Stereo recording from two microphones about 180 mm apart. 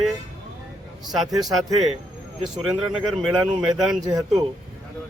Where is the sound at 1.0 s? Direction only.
Centre (ahead or behind).